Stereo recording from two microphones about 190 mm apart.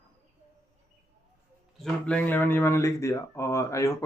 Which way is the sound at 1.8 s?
5° left (ahead or behind).